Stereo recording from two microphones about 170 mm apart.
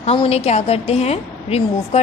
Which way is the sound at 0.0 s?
35° left (ahead or behind).